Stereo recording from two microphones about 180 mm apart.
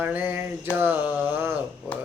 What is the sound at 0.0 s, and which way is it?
Mantra, 10° right (ahead or behind).